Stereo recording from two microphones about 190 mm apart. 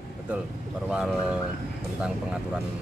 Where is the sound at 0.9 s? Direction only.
5° right (ahead or behind).